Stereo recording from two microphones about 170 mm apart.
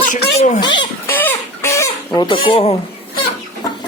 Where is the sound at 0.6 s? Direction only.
25° left (ahead or behind).